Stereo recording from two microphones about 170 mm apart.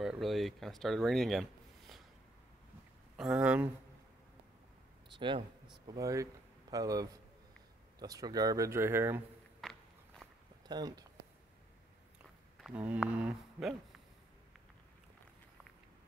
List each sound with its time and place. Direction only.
0.0 s speech: centre (ahead or behind)
3.2 s speech: 5° right (ahead or behind)
5.1 s speech: 25° right (ahead or behind)
9.6 s walk: centre (ahead or behind)
10.7 s speech: 25° right (ahead or behind)
12.6 s speech: 10° right (ahead or behind)